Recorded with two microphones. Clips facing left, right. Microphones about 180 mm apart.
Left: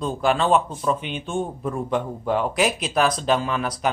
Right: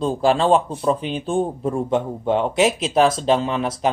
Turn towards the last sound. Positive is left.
turn(degrees=-25)  # may be behind; listen again after turning